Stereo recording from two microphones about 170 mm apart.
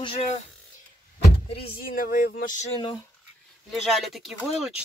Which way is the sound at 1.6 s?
60° left (ahead or behind).